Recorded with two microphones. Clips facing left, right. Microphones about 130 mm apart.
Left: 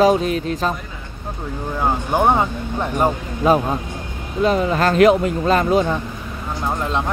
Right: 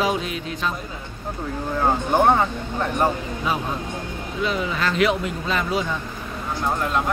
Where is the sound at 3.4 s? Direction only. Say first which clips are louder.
Left 10 dB; 45° left (ahead or behind).